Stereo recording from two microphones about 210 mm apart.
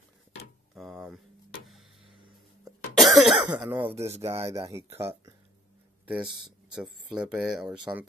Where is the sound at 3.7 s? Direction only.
10° right (ahead or behind).